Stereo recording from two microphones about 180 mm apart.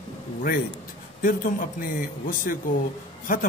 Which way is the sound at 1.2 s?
50° left (ahead or behind).